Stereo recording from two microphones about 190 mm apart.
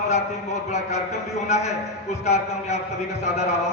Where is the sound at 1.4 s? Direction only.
35° left (ahead or behind).